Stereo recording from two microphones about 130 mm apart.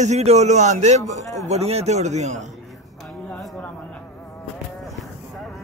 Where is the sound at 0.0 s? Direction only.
60° right (ahead or behind).